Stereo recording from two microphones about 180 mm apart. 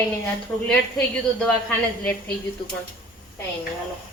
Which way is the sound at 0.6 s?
Centre (ahead or behind).